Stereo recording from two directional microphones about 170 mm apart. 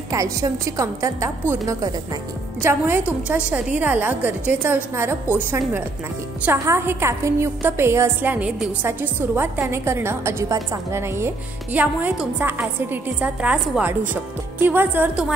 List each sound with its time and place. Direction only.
0.1 s a woman's voice: 20° right (ahead or behind)